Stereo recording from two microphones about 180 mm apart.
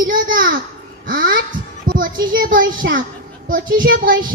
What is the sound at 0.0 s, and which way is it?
A child's voice, 50° right (ahead or behind).